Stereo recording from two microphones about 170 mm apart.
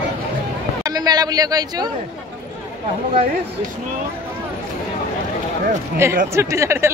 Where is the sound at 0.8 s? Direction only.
25° right (ahead or behind).